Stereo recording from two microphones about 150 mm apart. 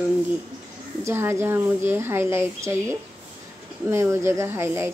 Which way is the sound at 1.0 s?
15° right (ahead or behind).